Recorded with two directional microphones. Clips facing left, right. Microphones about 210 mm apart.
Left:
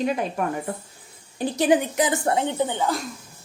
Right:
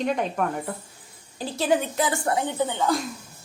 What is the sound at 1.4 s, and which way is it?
A woman's voice, 15° left (ahead or behind).